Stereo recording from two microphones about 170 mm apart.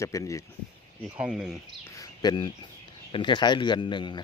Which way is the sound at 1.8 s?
20° left (ahead or behind).